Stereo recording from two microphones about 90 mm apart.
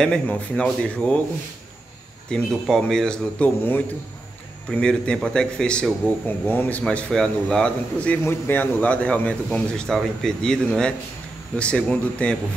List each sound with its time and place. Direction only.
0.0 s a man's voice: 10° left (ahead or behind)
2.3 s a man's voice: 10° left (ahead or behind)
8.2 s a man's voice: 25° left (ahead or behind)